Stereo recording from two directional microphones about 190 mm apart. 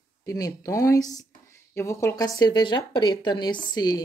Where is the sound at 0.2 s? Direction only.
20° left (ahead or behind).